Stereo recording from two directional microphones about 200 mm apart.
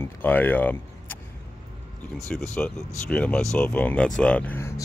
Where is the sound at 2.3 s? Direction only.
5° left (ahead or behind).